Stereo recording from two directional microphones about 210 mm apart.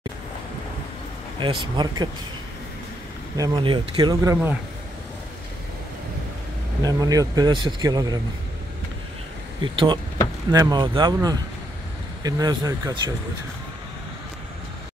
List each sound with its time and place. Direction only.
1.4 s speech: 20° right (ahead or behind)
3.3 s speech: 20° right (ahead or behind)
6.8 s speech: 15° right (ahead or behind)
9.6 s speech: 20° right (ahead or behind)